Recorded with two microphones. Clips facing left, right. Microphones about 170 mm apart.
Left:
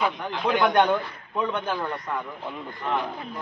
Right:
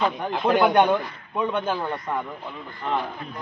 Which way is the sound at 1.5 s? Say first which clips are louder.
Right 2 dB; 25° right (ahead or behind).